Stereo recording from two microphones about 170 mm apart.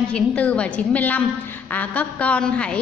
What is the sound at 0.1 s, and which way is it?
A woman's voice, 5° left (ahead or behind).